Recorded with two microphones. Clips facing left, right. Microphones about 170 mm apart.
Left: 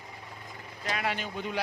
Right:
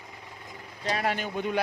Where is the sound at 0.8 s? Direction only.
40° right (ahead or behind).